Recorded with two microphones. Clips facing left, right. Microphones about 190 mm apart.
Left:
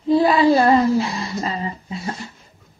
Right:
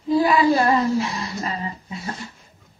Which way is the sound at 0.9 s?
30° left (ahead or behind).